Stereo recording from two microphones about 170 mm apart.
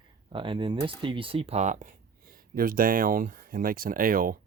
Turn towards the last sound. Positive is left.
turn(degrees=-55)  # may be behind; listen again after turning